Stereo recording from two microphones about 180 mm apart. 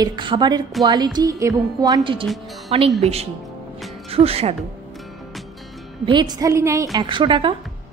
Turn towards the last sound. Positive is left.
turn(degrees=-30)  # may be behind; listen again after turning